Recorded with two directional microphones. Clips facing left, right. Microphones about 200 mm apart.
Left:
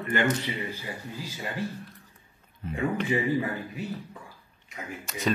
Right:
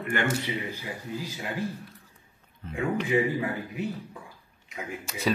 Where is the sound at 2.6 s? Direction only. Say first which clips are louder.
Left 4 dB; 10° left (ahead or behind).